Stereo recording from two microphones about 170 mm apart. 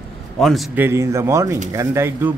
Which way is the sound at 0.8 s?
15° right (ahead or behind).